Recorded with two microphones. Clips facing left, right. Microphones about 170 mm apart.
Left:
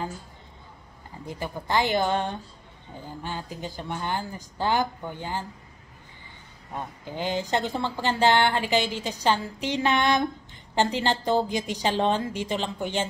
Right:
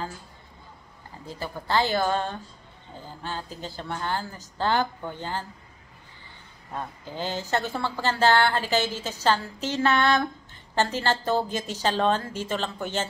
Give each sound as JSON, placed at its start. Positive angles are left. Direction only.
{"t": 1.2, "sound": "a woman's voice", "side_deg": 15}
{"t": 6.7, "sound": "a woman's voice", "side_deg": 15}